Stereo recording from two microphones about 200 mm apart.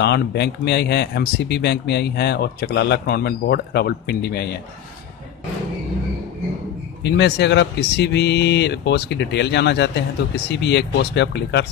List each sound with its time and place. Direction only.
0.0 s a man's voice: 55° left (ahead or behind)
7.0 s a man's voice: 60° left (ahead or behind)